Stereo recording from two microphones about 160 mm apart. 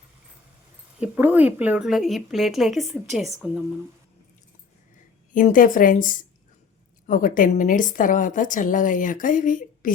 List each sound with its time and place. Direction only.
0.9 s speech: 10° right (ahead or behind)
5.3 s a woman's voice: 55° left (ahead or behind)